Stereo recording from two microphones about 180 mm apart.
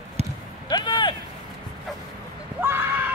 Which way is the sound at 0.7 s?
25° left (ahead or behind).